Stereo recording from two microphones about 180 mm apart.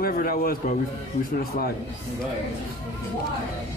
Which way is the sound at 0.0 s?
55° left (ahead or behind).